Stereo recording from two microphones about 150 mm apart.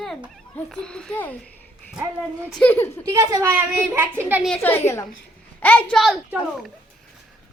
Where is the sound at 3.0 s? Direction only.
20° right (ahead or behind).